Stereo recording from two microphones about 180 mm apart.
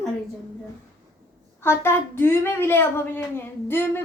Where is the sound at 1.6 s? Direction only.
15° left (ahead or behind).